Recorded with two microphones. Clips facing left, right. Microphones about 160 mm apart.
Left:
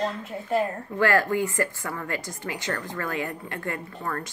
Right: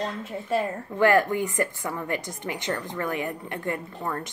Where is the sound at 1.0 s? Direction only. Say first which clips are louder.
Right 2 dB; 20° right (ahead or behind).